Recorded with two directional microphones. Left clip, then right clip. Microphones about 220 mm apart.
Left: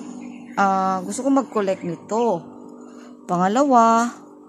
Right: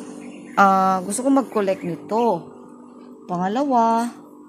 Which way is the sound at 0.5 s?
10° right (ahead or behind).